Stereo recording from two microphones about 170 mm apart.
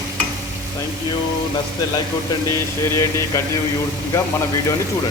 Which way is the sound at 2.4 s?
15° left (ahead or behind).